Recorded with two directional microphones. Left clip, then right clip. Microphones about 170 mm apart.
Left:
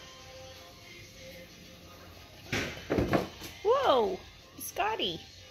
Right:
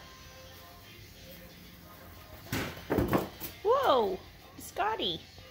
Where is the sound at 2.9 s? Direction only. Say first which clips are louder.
Even; 20° right (ahead or behind).